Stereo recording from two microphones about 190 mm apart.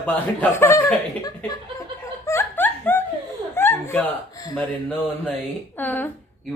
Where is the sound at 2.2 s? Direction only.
15° left (ahead or behind).